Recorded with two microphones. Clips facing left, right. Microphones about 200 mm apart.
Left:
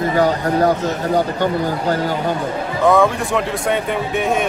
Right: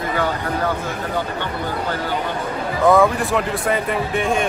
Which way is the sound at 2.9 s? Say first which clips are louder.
Even; centre (ahead or behind).